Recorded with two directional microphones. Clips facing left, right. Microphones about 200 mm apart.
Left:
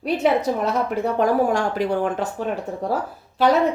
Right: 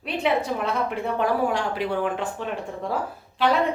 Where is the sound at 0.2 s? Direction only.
40° left (ahead or behind).